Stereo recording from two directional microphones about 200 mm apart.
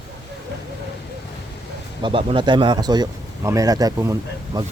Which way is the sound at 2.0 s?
25° right (ahead or behind).